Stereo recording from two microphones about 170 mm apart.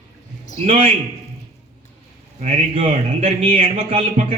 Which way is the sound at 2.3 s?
40° right (ahead or behind).